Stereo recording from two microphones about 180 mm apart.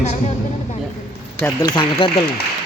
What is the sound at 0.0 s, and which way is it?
Speech, 40° left (ahead or behind).